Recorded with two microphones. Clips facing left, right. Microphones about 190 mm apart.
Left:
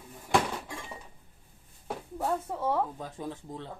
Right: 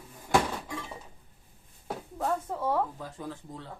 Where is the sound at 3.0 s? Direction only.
20° left (ahead or behind).